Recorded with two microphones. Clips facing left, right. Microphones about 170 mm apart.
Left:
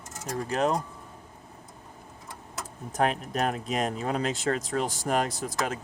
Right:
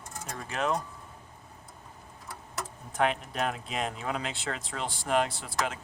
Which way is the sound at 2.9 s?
40° left (ahead or behind).